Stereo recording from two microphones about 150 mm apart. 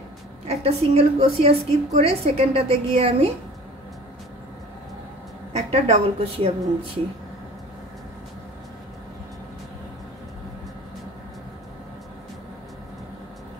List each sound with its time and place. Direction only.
0.5 s a woman's voice: 45° right (ahead or behind)
5.5 s a woman's voice: 45° right (ahead or behind)